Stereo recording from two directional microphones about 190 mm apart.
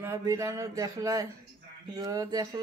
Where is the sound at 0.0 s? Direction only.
15° right (ahead or behind).